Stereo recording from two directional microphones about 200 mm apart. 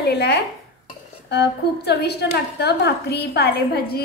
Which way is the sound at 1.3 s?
55° left (ahead or behind).